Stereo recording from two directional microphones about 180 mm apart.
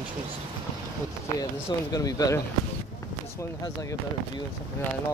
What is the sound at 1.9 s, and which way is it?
Speech, 20° left (ahead or behind).